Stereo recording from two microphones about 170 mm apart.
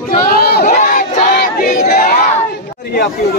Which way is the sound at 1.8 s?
65° left (ahead or behind).